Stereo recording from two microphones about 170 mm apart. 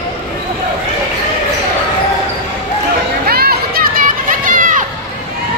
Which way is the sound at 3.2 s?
65° right (ahead or behind).